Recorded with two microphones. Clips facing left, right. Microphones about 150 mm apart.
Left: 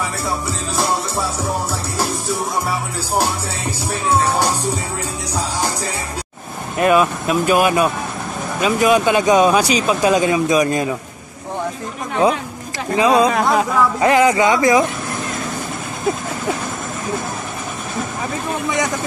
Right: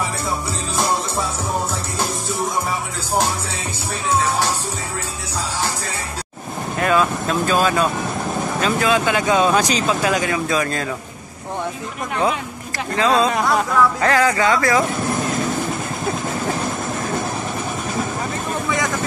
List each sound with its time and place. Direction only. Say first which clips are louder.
6.8 s speech: left 4 dB; 15° left (ahead or behind)
12.9 s speech: left 3 dB; 15° left (ahead or behind)
13.3 s speech: left 2 dB; centre (ahead or behind)
14.0 s speech: left 3 dB; 20° left (ahead or behind)